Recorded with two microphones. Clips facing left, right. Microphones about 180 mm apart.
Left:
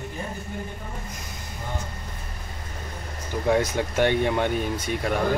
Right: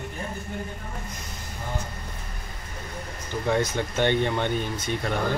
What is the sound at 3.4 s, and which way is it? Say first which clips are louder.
Speech: left 2 dB; 10° left (ahead or behind).